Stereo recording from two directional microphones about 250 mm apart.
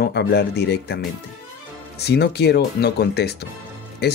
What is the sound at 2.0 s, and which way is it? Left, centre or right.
Speech, left.